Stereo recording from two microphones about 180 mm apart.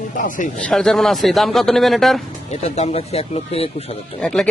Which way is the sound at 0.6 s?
5° left (ahead or behind).